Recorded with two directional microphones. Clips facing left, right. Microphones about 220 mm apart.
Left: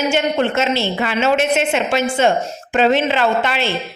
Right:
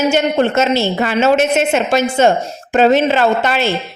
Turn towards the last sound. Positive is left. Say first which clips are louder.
# right 3 dB
turn(degrees=-45)  # may be behind; listen again after turning